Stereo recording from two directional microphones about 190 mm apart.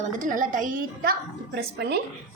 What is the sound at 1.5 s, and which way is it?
Speech, 60° right (ahead or behind).